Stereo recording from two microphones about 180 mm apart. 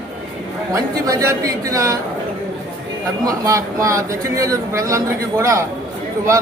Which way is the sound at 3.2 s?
20° right (ahead or behind).